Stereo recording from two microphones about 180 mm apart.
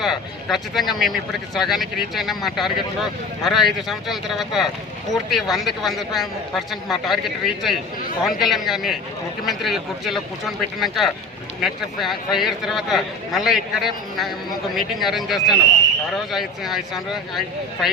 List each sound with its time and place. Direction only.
0.0 s speech: centre (ahead or behind)